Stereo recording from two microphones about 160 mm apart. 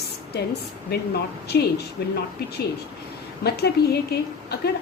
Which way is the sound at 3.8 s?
90° left.